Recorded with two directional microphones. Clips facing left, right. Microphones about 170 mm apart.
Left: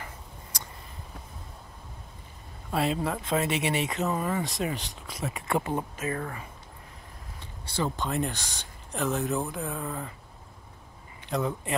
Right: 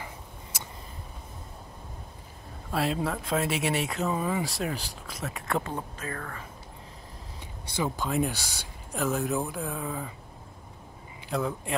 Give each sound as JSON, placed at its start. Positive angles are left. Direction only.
{"t": 2.7, "sound": "speech", "side_deg": 0}
{"t": 5.6, "sound": "speech", "side_deg": 20}
{"t": 7.6, "sound": "speech", "side_deg": -10}
{"t": 11.2, "sound": "speech", "side_deg": 0}